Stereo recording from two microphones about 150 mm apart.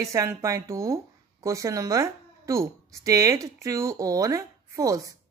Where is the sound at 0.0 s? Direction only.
20° right (ahead or behind).